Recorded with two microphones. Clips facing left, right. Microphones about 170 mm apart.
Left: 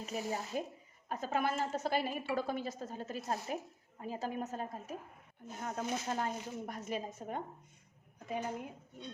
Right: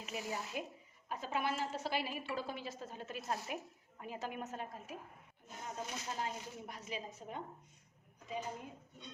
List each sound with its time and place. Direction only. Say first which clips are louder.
0.0 s a woman's voice: left 4 dB; 40° left (ahead or behind)
5.6 s a woman's voice: left 7 dB; 55° left (ahead or behind)